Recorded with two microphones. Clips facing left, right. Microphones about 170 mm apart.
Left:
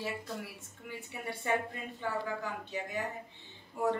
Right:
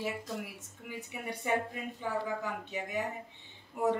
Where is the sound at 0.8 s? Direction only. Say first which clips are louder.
Right 1 dB; 15° right (ahead or behind).